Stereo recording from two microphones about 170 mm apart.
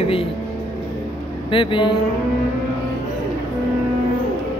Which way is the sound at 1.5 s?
30° left (ahead or behind).